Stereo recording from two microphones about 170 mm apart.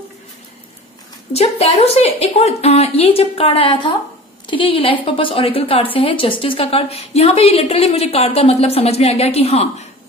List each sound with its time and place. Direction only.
1.3 s a woman's voice: 35° left (ahead or behind)